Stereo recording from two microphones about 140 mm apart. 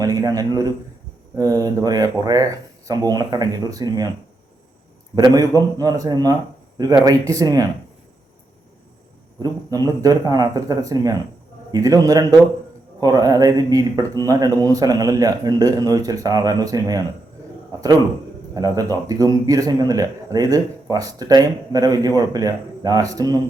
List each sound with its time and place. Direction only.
0.0 s speech: 25° right (ahead or behind)
5.1 s speech: 25° right (ahead or behind)
9.4 s speech: 25° right (ahead or behind)